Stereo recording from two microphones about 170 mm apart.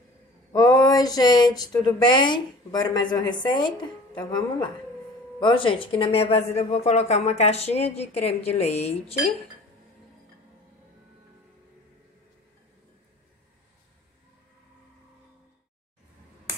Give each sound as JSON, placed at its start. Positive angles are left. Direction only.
{"t": 0.5, "sound": "speech", "side_deg": 20}